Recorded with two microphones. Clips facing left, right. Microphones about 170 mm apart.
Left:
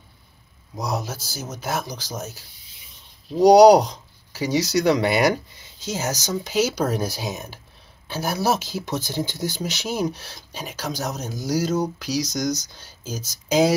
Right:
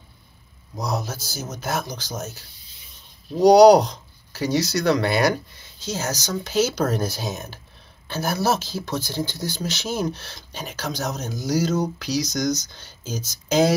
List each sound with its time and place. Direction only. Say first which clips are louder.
0.7 s speech: even; 10° left (ahead or behind)